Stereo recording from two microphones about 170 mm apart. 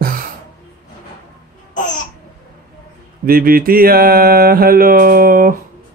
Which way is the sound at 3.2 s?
60° right (ahead or behind).